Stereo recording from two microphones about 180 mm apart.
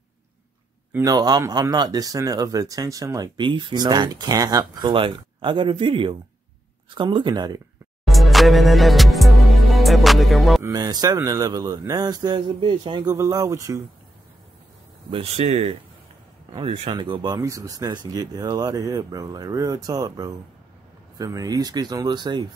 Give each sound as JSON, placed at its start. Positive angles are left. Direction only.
{"t": 0.9, "sound": "speech", "side_deg": -20}
{"t": 8.1, "sound": "music", "side_deg": 0}
{"t": 10.6, "sound": "speech", "side_deg": -20}
{"t": 15.0, "sound": "speech", "side_deg": -35}